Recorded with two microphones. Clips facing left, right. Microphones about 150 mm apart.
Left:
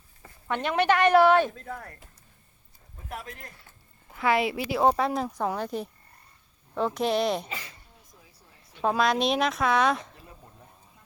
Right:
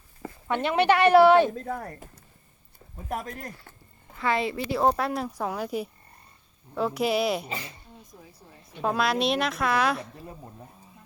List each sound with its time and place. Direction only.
0.4 s speech: 5° right (ahead or behind)
1.5 s speech: 40° right (ahead or behind)
3.1 s speech: 45° right (ahead or behind)
4.1 s speech: 5° left (ahead or behind)
8.8 s speech: centre (ahead or behind)